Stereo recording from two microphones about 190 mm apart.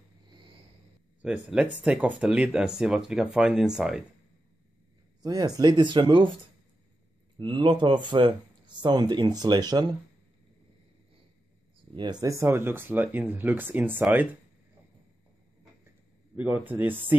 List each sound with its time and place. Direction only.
1.2 s speech: 5° right (ahead or behind)
5.2 s speech: 20° right (ahead or behind)
7.3 s speech: 25° right (ahead or behind)
11.9 s speech: 20° right (ahead or behind)
16.3 s speech: 10° right (ahead or behind)